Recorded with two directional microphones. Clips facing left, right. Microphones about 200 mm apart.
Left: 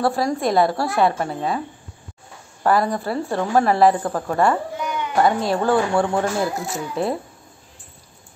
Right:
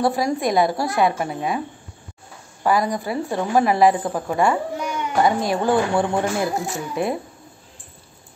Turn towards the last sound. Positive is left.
turn(degrees=-15)  # may be behind; listen again after turning